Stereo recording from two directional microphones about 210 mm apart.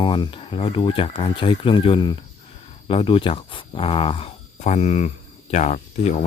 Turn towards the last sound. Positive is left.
turn(degrees=30)  # may be behind; listen again after turning